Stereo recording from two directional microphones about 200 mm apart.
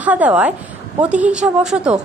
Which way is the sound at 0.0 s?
5° right (ahead or behind).